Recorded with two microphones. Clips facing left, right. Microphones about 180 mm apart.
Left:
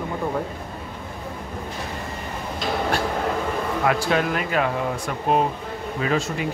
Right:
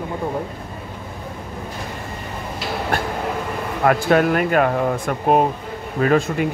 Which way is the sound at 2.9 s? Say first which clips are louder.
Right 1 dB; 50° right (ahead or behind).